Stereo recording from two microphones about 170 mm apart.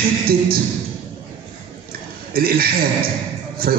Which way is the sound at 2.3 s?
60° right (ahead or behind).